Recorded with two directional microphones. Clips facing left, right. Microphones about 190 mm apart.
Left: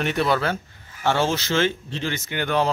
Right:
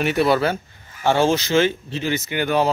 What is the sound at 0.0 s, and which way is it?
Speech, 10° right (ahead or behind).